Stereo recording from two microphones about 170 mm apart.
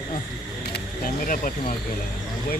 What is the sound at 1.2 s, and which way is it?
Speech, 55° left (ahead or behind).